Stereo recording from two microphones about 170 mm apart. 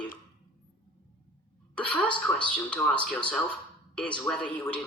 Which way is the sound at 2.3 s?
5° left (ahead or behind).